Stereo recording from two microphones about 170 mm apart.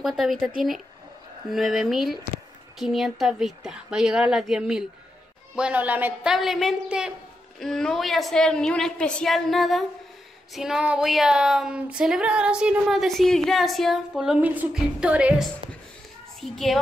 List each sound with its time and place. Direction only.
0.0 s child singing: centre (ahead or behind)
5.6 s speech: 10° right (ahead or behind)
6.3 s child singing: centre (ahead or behind)